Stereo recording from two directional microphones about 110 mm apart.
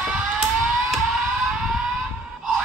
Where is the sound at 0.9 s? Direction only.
Centre (ahead or behind).